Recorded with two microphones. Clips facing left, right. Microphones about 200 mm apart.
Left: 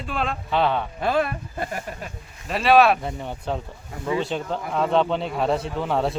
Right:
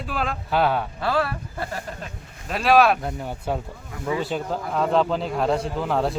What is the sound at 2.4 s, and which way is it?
A man's voice, centre (ahead or behind).